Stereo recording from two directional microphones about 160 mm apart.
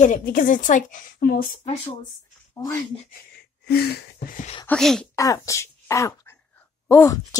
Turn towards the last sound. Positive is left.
turn(degrees=20)  # may be behind; listen again after turning